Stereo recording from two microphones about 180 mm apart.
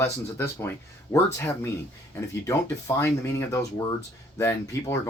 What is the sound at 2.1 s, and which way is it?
Speech, 15° left (ahead or behind).